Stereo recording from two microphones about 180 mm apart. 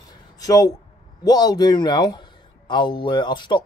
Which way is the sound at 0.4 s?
20° left (ahead or behind).